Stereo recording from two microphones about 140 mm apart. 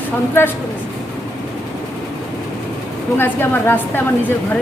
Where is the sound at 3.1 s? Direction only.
15° left (ahead or behind).